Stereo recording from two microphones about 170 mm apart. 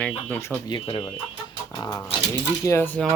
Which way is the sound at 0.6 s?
30° left (ahead or behind).